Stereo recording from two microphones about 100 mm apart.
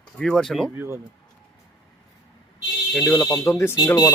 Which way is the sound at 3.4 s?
25° left (ahead or behind).